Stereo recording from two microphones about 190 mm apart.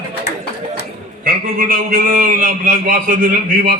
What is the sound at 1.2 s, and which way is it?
A man's voice, 50° right (ahead or behind).